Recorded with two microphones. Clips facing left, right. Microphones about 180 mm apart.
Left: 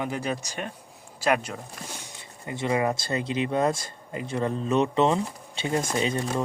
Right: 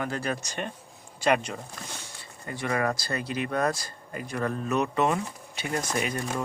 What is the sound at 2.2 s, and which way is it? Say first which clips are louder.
Speech: left 3 dB; 20° left (ahead or behind).